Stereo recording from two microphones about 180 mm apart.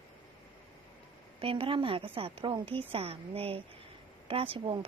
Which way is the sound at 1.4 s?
30° right (ahead or behind).